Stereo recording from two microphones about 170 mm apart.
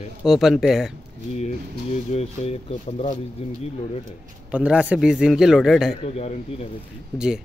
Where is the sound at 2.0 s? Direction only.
40° left (ahead or behind).